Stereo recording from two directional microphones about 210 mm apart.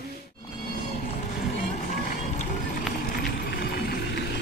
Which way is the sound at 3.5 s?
50° left (ahead or behind).